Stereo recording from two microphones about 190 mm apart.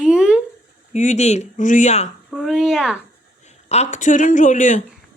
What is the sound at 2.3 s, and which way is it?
Speech, centre (ahead or behind).